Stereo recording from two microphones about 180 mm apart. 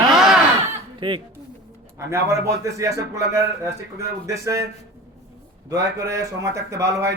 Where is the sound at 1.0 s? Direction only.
25° right (ahead or behind).